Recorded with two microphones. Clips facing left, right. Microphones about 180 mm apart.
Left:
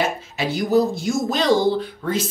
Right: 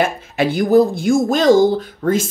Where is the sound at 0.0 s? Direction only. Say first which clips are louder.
Right 6 dB; 55° right (ahead or behind).